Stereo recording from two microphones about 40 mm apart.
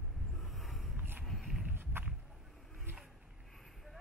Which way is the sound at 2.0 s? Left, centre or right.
Right.